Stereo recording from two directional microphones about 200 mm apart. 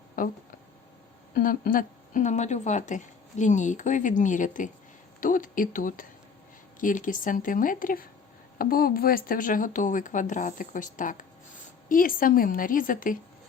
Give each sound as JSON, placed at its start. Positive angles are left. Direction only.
{"t": 0.2, "sound": "a woman's voice", "side_deg": 45}